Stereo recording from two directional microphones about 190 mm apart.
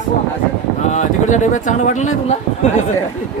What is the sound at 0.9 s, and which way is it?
Speech, 40° left (ahead or behind).